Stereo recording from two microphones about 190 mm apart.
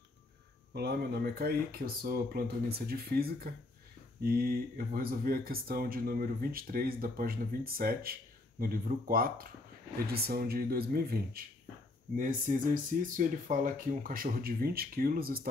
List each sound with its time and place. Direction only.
0.7 s speech: 60° right (ahead or behind)